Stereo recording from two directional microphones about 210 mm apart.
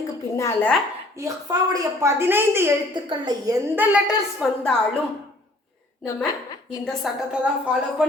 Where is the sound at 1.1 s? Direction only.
15° right (ahead or behind).